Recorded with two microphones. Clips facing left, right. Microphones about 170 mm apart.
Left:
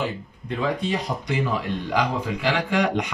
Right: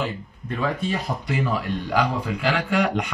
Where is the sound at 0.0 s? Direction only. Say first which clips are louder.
Even; 20° left (ahead or behind).